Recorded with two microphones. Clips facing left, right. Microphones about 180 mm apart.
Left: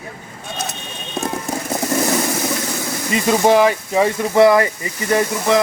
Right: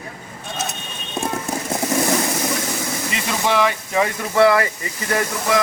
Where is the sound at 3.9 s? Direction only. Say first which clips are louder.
Left 4 dB; 25° left (ahead or behind).